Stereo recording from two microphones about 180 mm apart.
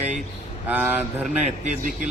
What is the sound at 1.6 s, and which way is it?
Speech, 50° right (ahead or behind).